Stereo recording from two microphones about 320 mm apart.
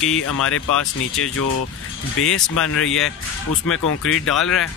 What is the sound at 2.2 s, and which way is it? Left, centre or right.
Speech, left.